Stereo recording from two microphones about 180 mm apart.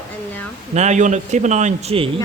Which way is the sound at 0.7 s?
40° right (ahead or behind).